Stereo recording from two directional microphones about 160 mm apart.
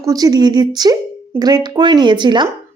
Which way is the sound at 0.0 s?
20° right (ahead or behind).